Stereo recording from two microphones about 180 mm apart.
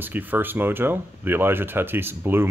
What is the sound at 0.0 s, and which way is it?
Speech, 10° right (ahead or behind).